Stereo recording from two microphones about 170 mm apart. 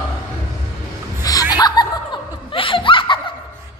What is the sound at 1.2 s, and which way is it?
Laughter, 20° left (ahead or behind).